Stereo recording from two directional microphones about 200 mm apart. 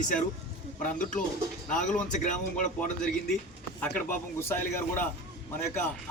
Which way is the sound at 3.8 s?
10° left (ahead or behind).